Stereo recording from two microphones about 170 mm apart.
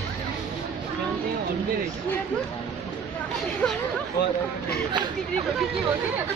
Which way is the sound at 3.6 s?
10° left (ahead or behind).